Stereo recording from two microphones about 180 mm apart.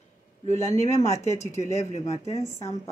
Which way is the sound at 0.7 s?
15° left (ahead or behind).